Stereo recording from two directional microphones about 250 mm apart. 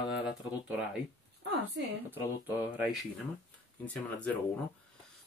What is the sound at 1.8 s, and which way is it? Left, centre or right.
Speech, right.